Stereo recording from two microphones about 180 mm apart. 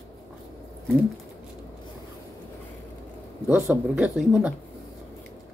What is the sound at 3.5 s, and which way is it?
Speech, 10° right (ahead or behind).